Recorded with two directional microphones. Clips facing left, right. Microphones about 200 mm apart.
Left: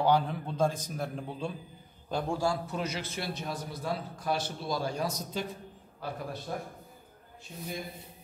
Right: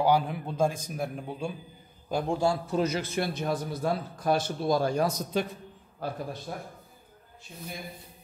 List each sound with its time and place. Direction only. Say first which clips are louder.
0.0 s a man's voice: right 2 dB; 10° right (ahead or behind)
2.8 s a man's voice: right 7 dB; 45° right (ahead or behind); by 5.5 s 60° right (ahead or behind)
6.0 s a man's voice: right 4 dB; 45° right (ahead or behind)
6.5 s speech: left 1 dB; 15° right (ahead or behind)